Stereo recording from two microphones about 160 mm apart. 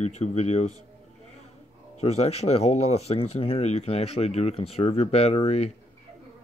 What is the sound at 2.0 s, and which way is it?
Speech, 40° left (ahead or behind).